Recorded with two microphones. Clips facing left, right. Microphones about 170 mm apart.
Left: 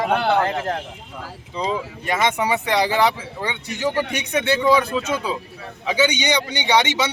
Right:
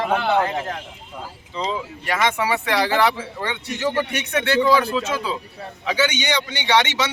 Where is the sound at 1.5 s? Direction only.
15° left (ahead or behind).